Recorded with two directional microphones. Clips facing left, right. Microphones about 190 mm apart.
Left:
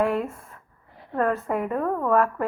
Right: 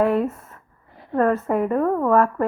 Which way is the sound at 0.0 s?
40° right (ahead or behind).